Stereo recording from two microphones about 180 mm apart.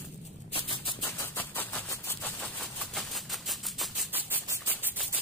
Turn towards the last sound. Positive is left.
turn(degrees=-10)  # may be behind; listen again after turning